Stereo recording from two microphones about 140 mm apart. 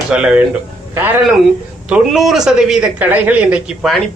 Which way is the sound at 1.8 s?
5° right (ahead or behind).